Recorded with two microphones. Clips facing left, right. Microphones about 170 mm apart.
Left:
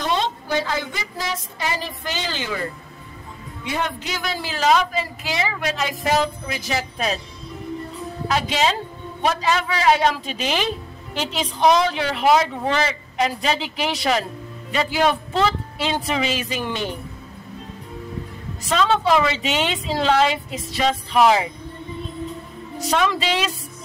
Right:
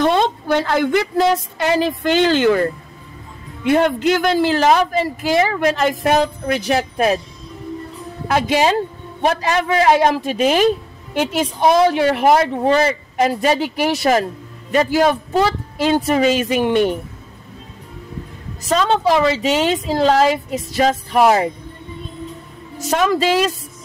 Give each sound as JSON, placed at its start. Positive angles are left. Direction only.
{"t": 0.0, "sound": "speech", "side_deg": -55}
{"t": 8.3, "sound": "a woman's voice", "side_deg": -55}
{"t": 18.7, "sound": "a woman's voice", "side_deg": -40}
{"t": 22.8, "sound": "a woman's voice", "side_deg": -45}